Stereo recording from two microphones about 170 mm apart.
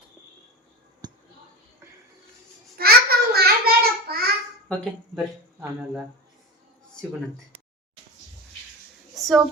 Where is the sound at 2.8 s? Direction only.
65° right (ahead or behind).